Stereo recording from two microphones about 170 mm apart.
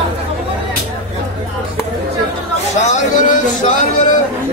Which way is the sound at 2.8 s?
45° left (ahead or behind).